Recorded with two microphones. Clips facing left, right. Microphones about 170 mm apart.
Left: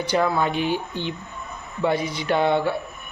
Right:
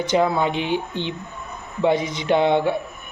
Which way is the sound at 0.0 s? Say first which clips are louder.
Right 2 dB; 20° right (ahead or behind).